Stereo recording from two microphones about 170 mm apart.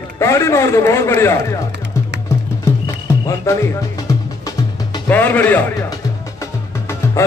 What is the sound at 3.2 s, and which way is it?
Speech, 15° left (ahead or behind).